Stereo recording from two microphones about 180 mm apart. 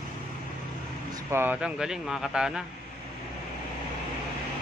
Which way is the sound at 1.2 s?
10° right (ahead or behind).